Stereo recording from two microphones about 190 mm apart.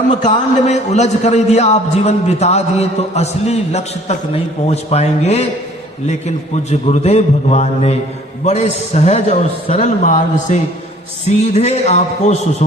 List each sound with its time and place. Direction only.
0.3 s a man's voice: 35° left (ahead or behind)